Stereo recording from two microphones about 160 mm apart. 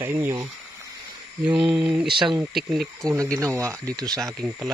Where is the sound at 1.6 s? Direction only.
5° right (ahead or behind).